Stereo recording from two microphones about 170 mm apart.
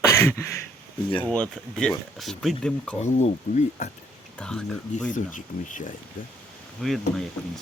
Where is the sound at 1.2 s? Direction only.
5° left (ahead or behind).